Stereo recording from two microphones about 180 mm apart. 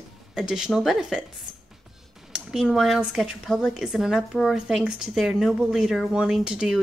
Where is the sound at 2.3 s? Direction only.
5° right (ahead or behind).